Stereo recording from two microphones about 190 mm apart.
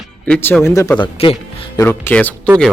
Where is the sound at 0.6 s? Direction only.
15° left (ahead or behind).